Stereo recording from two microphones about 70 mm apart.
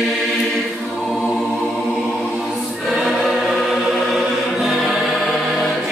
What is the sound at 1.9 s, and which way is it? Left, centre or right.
Choir, centre.